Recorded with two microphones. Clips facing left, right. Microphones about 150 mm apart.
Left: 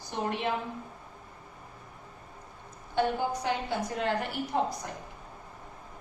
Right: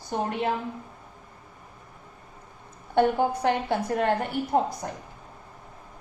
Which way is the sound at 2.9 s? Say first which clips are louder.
Right 6 dB; 60° right (ahead or behind).